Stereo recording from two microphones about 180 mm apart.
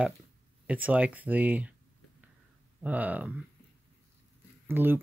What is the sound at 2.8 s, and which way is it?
Speech, 10° right (ahead or behind).